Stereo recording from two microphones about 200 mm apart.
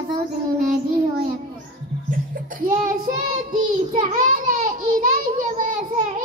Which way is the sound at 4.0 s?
40° right (ahead or behind).